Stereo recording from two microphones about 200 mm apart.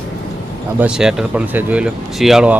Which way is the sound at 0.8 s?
5° right (ahead or behind).